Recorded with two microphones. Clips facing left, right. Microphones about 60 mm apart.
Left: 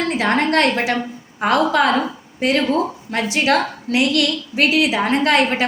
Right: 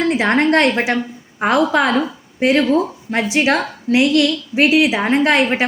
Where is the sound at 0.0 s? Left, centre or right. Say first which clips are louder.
Right 3 dB; right.